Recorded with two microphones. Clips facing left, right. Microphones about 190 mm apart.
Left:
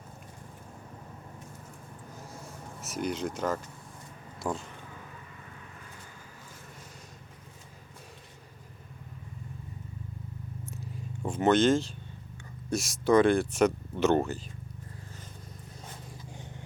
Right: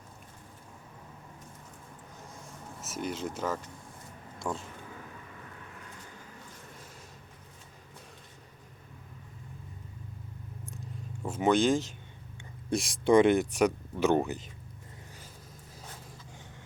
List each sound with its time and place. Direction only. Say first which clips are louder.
2.8 s speech: left 3 dB; centre (ahead or behind)
4.4 s a sound: left 2 dB; 5° left (ahead or behind)
10.7 s purr: even; centre (ahead or behind)
11.3 s speech: left 2 dB; 10° right (ahead or behind)
13.1 s speech: even; 25° right (ahead or behind)